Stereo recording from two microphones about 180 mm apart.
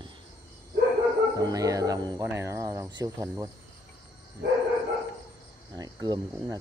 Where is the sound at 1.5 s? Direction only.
20° right (ahead or behind).